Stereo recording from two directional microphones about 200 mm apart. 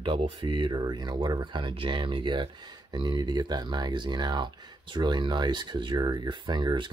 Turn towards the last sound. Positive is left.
turn(degrees=-20)  # may be behind; listen again after turning